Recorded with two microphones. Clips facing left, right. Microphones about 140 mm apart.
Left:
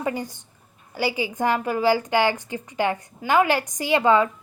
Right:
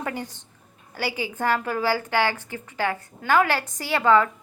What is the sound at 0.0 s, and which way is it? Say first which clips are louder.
A woman's voice: left 4 dB; 10° left (ahead or behind).